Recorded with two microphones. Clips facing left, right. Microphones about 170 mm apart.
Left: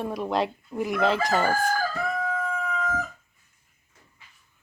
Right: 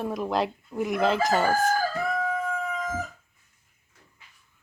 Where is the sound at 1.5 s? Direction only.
45° right (ahead or behind).